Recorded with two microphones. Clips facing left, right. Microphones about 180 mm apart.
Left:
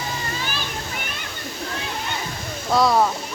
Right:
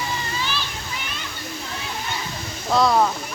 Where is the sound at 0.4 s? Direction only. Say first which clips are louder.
Even; 50° left (ahead or behind).